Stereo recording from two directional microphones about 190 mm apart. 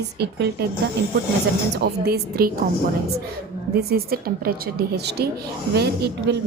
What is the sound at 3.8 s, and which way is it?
A woman's voice, 55° right (ahead or behind).